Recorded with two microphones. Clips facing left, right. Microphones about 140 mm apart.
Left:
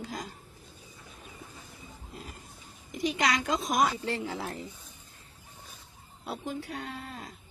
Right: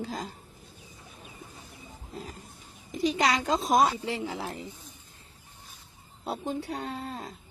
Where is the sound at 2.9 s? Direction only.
35° right (ahead or behind).